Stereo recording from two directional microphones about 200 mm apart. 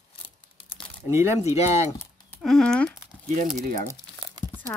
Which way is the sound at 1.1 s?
15° right (ahead or behind).